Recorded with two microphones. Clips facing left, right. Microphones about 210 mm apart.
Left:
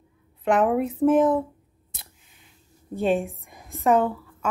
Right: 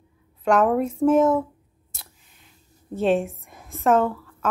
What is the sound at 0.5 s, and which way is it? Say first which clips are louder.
Speech: right 1 dB; centre (ahead or behind).